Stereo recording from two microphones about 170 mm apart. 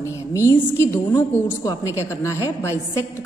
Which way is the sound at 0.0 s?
15° left (ahead or behind).